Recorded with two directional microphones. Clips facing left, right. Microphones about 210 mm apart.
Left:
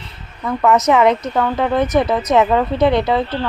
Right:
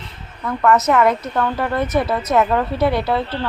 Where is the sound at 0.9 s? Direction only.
Centre (ahead or behind).